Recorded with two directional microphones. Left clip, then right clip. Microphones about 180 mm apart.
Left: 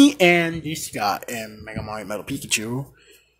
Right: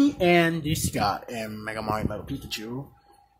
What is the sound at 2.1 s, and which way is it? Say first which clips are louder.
Speech: left 8 dB; 20° left (ahead or behind).